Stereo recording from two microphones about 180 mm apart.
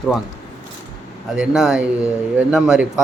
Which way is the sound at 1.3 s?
Centre (ahead or behind).